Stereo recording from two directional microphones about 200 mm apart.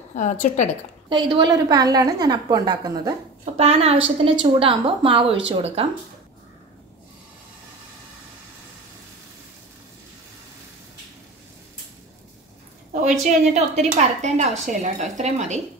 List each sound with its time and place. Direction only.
0.1 s a woman's voice: 35° left (ahead or behind)
1.0 s a woman's voice: 25° right (ahead or behind)
3.5 s a woman's voice: 30° right (ahead or behind)
13.5 s a woman's voice: 35° right (ahead or behind)